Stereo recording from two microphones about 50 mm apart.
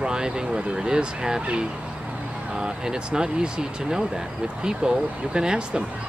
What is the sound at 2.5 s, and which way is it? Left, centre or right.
Speech, centre.